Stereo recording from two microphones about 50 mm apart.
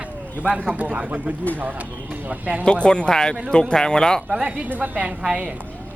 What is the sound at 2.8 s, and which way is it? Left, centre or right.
Speech, centre.